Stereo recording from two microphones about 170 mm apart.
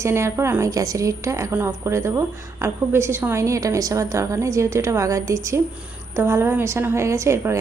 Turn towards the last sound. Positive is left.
turn(degrees=-15)  # may be behind; listen again after turning